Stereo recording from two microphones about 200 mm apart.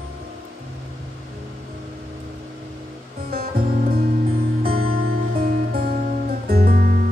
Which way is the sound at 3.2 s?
50° right (ahead or behind).